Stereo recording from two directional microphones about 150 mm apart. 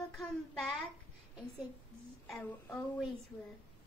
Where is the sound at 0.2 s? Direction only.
Centre (ahead or behind).